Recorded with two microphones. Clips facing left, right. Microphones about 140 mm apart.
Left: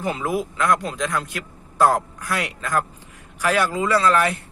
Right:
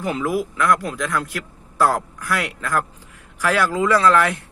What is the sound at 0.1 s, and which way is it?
Speech, 20° left (ahead or behind).